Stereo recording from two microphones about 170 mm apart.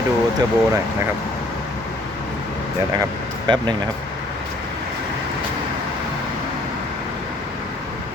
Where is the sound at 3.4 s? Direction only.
25° right (ahead or behind).